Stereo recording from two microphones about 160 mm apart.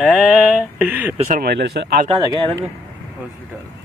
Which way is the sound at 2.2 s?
25° right (ahead or behind).